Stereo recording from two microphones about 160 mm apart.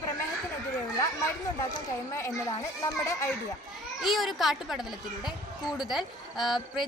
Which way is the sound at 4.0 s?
Centre (ahead or behind).